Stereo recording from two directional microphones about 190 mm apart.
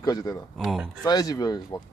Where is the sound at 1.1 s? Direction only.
20° left (ahead or behind).